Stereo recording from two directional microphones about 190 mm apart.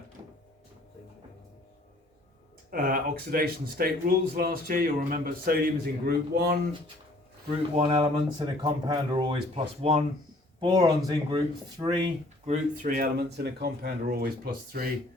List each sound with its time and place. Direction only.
2.6 s speech: 50° right (ahead or behind)
7.8 s speech: 30° right (ahead or behind)
12.5 s speech: 45° right (ahead or behind)